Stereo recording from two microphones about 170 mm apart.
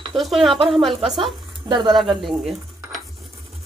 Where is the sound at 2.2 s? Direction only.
Centre (ahead or behind).